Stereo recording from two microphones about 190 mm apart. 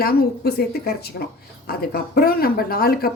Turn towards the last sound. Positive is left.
turn(degrees=50)  # may be behind; listen again after turning